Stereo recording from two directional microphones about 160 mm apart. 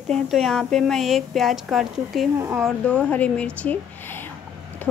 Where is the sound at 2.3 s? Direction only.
20° right (ahead or behind).